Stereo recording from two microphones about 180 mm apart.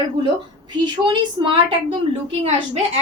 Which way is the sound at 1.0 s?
25° right (ahead or behind).